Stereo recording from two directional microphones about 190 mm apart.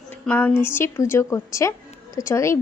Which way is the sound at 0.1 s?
10° left (ahead or behind).